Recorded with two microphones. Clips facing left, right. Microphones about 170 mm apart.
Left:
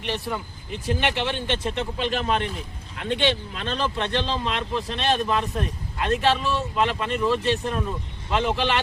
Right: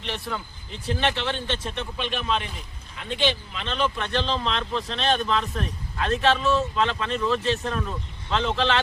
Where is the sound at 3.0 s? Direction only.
65° left (ahead or behind); by 4.3 s 25° left (ahead or behind).